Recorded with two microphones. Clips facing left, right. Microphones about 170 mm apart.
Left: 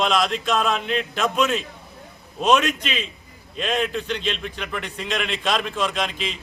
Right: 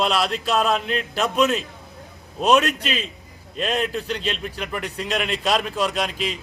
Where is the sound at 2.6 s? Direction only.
35° right (ahead or behind).